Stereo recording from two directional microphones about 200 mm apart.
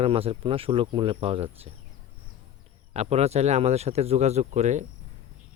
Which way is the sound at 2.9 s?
30° right (ahead or behind).